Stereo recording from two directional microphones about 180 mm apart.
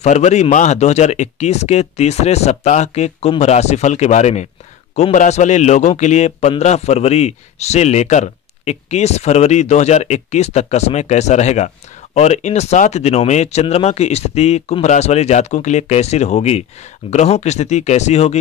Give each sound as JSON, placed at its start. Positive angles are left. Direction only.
{"t": 0.0, "sound": "a man's voice", "side_deg": 40}